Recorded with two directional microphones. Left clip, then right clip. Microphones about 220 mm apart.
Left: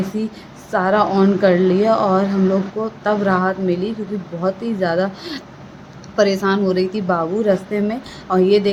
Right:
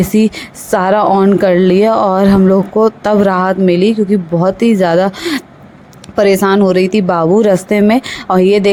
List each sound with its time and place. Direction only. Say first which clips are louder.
0.2 s a woman's voice: right 13 dB; 40° right (ahead or behind)